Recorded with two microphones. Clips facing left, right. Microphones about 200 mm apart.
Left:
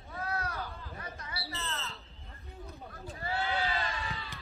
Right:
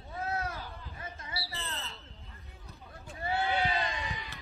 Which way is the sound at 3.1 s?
25° right (ahead or behind).